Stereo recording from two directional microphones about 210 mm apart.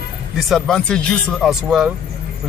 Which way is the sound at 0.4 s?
Centre (ahead or behind).